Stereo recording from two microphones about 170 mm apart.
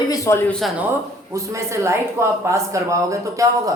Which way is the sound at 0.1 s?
15° left (ahead or behind).